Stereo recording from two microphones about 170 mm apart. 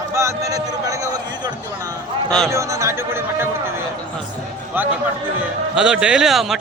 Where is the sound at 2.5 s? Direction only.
20° right (ahead or behind).